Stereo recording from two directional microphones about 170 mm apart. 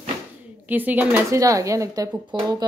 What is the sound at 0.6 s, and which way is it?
Speech, 10° right (ahead or behind).